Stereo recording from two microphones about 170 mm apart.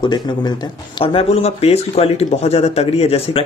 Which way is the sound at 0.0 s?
25° left (ahead or behind).